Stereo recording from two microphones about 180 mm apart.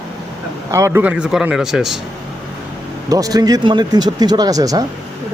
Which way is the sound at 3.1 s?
20° right (ahead or behind).